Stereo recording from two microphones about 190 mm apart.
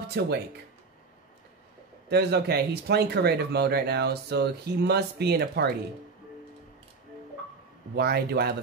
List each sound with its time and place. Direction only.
0.0 s speech: 60° right (ahead or behind)
2.0 s speech: 60° right (ahead or behind)
7.9 s speech: 60° right (ahead or behind)